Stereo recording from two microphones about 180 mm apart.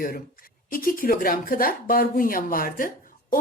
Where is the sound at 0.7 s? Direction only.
50° left (ahead or behind).